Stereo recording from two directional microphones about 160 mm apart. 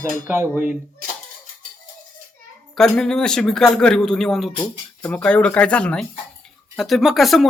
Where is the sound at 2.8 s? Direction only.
5° left (ahead or behind).